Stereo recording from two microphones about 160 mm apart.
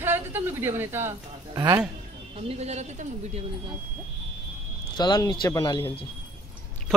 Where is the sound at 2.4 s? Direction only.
45° right (ahead or behind).